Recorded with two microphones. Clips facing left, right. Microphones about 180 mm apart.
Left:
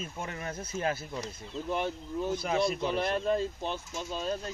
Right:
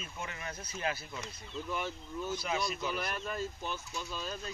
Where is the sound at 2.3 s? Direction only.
50° left (ahead or behind).